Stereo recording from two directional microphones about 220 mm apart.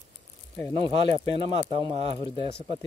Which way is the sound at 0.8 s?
25° right (ahead or behind).